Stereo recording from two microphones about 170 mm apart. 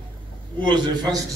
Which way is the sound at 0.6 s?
25° right (ahead or behind).